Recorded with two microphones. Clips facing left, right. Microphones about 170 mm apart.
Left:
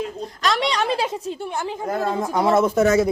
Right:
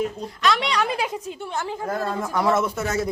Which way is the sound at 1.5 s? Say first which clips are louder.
Even; 15° left (ahead or behind).